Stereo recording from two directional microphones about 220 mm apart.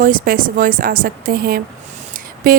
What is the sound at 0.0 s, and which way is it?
A woman's voice, 40° right (ahead or behind).